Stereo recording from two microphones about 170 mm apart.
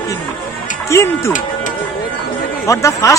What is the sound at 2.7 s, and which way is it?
Speech, 20° left (ahead or behind).